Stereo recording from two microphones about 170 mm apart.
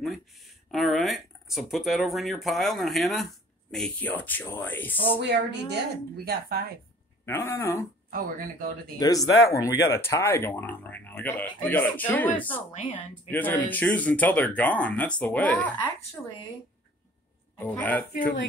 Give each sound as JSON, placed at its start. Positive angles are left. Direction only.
{"t": 0.7, "sound": "speech", "side_deg": 0}
{"t": 5.2, "sound": "a woman's voice", "side_deg": -90}
{"t": 7.2, "sound": "speech", "side_deg": 15}
{"t": 8.1, "sound": "speech", "side_deg": -55}
{"t": 9.0, "sound": "speech", "side_deg": 20}
{"t": 12.8, "sound": "speech", "side_deg": 30}
{"t": 13.3, "sound": "speech", "side_deg": 10}
{"t": 17.6, "sound": "speech", "side_deg": 10}